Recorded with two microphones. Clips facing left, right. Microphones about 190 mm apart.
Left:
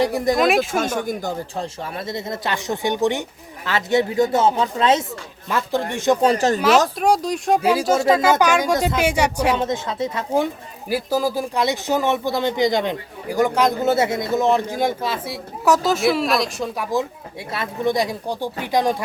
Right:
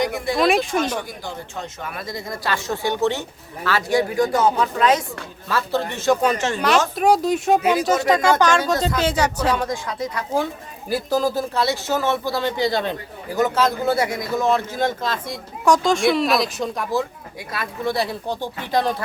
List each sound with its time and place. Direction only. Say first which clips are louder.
0.0 s speech: left 4 dB; 35° left (ahead or behind)
0.3 s speech: right 3 dB; centre (ahead or behind)
1.0 s speech: left 7 dB; 45° left (ahead or behind); by 6.1 s 15° left (ahead or behind)
6.2 s speech: left 4 dB; 35° left (ahead or behind)
6.9 s speech: right 2 dB; centre (ahead or behind)
9.6 s speech: left 2 dB; 25° left (ahead or behind)
17.5 s speech: left 3 dB; 20° left (ahead or behind)